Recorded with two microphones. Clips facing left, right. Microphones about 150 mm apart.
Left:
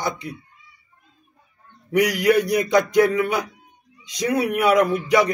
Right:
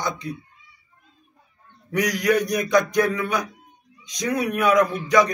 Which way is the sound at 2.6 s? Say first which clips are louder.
Left 2 dB; 20° left (ahead or behind).